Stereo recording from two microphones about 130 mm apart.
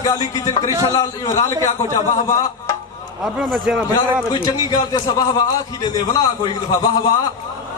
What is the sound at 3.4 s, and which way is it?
Speech, centre (ahead or behind).